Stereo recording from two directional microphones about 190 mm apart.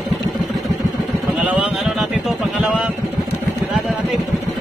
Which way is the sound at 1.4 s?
5° right (ahead or behind).